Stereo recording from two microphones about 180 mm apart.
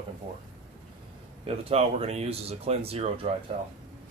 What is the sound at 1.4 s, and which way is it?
Speech, 30° right (ahead or behind).